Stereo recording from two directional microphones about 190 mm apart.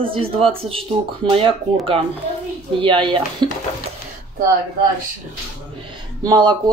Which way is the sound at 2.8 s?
25° right (ahead or behind).